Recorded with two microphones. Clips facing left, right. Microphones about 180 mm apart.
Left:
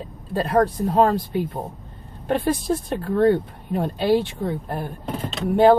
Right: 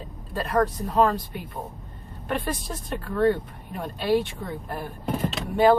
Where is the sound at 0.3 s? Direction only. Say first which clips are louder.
Left 4 dB; 30° left (ahead or behind).